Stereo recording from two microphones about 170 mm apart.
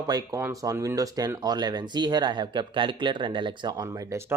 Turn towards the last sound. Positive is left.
turn(degrees=-15)  # may be behind; listen again after turning